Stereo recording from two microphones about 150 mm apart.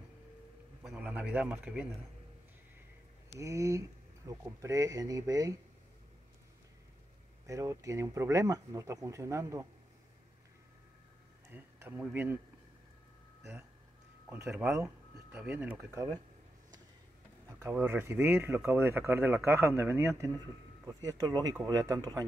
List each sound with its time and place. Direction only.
0.8 s a man's voice: 5° right (ahead or behind)
3.3 s speech: 20° right (ahead or behind)
7.4 s speech: 20° right (ahead or behind)
11.5 s speech: 15° right (ahead or behind)
15.3 s speech: 10° right (ahead or behind)
17.5 s speech: 20° right (ahead or behind)